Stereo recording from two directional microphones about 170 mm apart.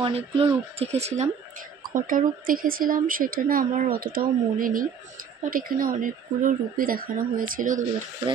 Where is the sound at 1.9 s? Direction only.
50° right (ahead or behind).